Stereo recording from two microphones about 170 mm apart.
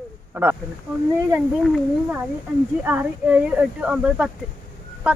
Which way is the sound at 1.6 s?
10° right (ahead or behind).